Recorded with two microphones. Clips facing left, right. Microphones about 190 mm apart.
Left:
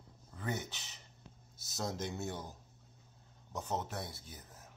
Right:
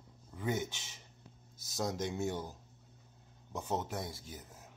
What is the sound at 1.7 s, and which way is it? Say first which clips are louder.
Speech: right 3 dB; 15° right (ahead or behind).